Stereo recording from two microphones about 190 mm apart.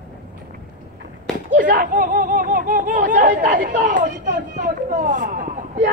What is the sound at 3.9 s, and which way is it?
Speech, 40° right (ahead or behind).